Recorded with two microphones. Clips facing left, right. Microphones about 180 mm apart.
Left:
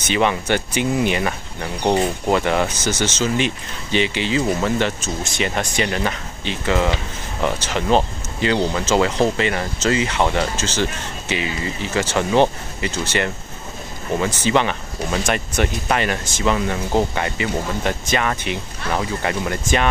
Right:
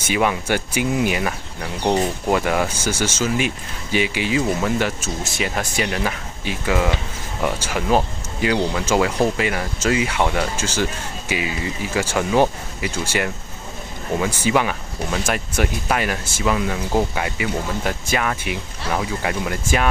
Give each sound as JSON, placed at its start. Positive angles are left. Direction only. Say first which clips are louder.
{"t": 0.0, "sound": "speech", "louder": "left 1 dB", "side_deg": -5}
{"t": 1.8, "sound": "speech", "louder": "left 1 dB", "side_deg": 15}
{"t": 2.2, "sound": "speech", "louder": "left 1 dB", "side_deg": -5}